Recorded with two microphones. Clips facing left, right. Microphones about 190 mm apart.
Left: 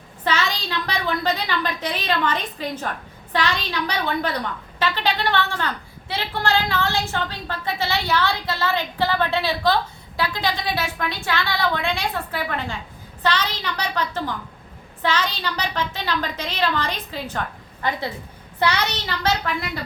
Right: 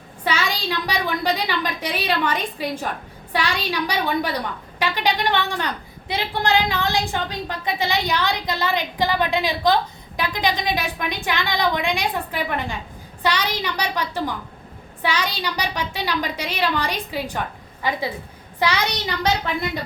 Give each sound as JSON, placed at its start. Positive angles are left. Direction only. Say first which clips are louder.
{"t": 0.3, "sound": "a woman's voice", "louder": "even", "side_deg": -10}
{"t": 18.6, "sound": "a woman's voice", "louder": "even", "side_deg": -10}